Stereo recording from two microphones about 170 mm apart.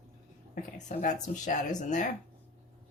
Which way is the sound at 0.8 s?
45° left (ahead or behind).